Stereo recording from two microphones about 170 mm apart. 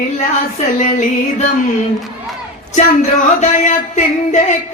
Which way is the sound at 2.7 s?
45° left (ahead or behind).